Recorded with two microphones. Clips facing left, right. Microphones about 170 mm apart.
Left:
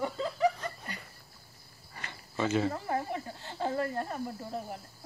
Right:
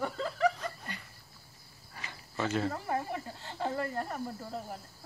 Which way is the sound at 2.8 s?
20° left (ahead or behind).